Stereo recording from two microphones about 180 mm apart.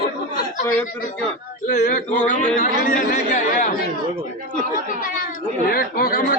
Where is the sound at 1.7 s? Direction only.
45° left (ahead or behind).